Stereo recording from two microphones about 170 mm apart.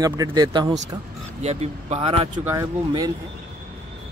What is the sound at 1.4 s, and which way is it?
Speech, 40° right (ahead or behind).